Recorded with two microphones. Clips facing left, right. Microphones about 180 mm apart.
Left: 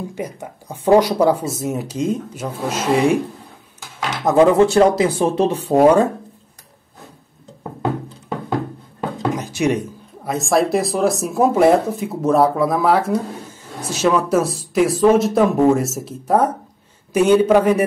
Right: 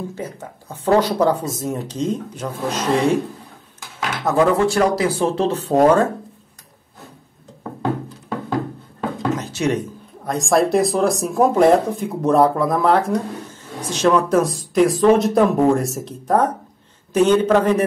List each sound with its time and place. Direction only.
0.1 s speech: 15° left (ahead or behind)
4.2 s speech: 20° left (ahead or behind)
9.3 s speech: 10° left (ahead or behind)